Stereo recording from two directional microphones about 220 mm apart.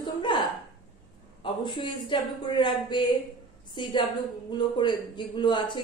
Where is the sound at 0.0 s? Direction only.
20° left (ahead or behind).